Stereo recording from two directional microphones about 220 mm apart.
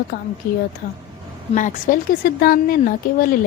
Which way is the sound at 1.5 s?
35° left (ahead or behind).